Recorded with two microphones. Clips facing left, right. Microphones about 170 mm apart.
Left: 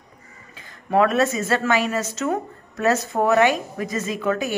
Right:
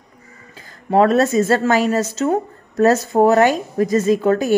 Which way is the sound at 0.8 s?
35° right (ahead or behind).